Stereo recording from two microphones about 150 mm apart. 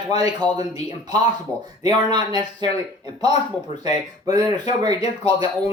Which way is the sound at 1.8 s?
30° right (ahead or behind).